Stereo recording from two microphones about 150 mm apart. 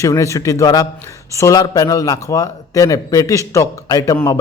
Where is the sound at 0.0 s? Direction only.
20° left (ahead or behind).